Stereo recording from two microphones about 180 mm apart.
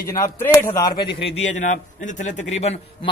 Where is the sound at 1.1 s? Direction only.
75° left (ahead or behind).